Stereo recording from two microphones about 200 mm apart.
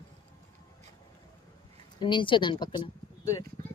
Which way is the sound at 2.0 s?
25° left (ahead or behind).